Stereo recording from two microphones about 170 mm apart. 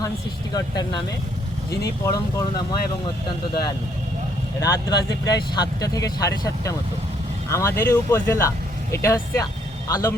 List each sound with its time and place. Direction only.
0.5 s speech: 25° left (ahead or behind)
2.0 s speech: 20° left (ahead or behind)